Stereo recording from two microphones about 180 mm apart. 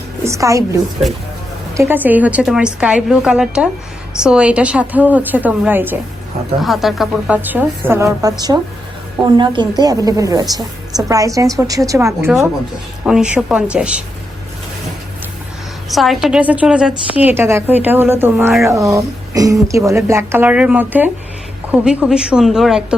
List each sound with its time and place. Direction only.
0.3 s a woman's voice: 15° right (ahead or behind)
6.6 s a woman's voice: centre (ahead or behind)
15.9 s a woman's voice: centre (ahead or behind)